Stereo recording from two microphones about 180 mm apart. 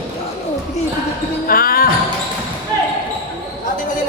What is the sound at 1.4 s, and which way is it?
Basketball bounce, 55° left (ahead or behind).